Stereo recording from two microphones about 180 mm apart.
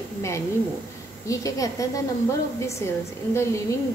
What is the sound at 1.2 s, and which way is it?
A woman's voice, 20° left (ahead or behind).